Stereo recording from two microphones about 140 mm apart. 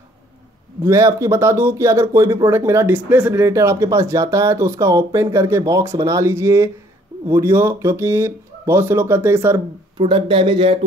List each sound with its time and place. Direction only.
0.8 s speech: 20° right (ahead or behind)
9.9 s speech: 35° right (ahead or behind)